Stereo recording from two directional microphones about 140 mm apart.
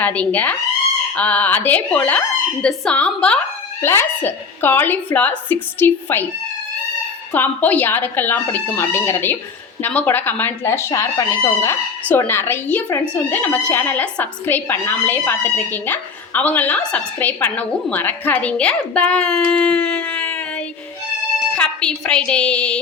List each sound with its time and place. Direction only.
0.0 s speech: 10° left (ahead or behind)
3.8 s speech: 20° left (ahead or behind)
7.3 s speech: 10° left (ahead or behind)
21.5 s a woman's voice: 5° left (ahead or behind)